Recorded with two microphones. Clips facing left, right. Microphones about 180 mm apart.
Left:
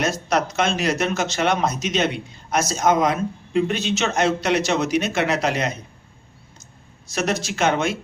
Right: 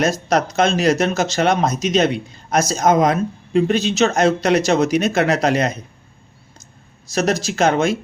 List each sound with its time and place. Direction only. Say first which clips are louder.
0.0 s speech: right 4 dB; 40° right (ahead or behind)
7.1 s speech: right 5 dB; 40° right (ahead or behind)